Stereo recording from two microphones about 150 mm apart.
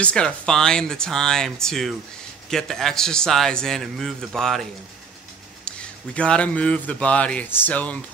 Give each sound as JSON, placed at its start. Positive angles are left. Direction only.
{"t": 0.0, "sound": "a man's voice", "side_deg": 5}
{"t": 5.7, "sound": "a man's voice", "side_deg": 5}